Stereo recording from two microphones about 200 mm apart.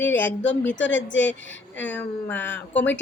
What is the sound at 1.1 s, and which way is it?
Speech, 65° left (ahead or behind).